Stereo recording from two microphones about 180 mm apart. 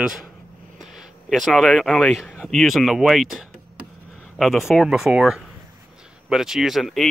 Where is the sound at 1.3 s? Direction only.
Centre (ahead or behind).